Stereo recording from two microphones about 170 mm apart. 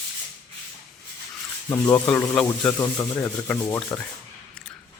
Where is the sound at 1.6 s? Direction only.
15° left (ahead or behind).